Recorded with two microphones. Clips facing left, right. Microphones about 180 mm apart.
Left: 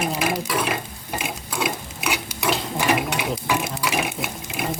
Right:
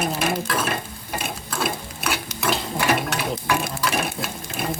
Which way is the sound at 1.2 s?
15° left (ahead or behind).